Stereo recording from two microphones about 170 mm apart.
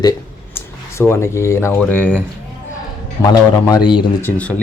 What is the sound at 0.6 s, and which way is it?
Speech, 15° left (ahead or behind).